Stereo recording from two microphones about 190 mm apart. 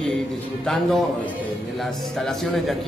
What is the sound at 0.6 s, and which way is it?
A man's voice, centre (ahead or behind).